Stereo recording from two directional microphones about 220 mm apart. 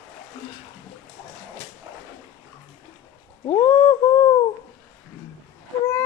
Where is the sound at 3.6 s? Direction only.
10° left (ahead or behind).